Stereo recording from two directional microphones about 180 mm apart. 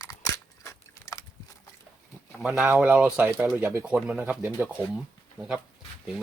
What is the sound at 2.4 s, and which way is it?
Speech, 5° right (ahead or behind).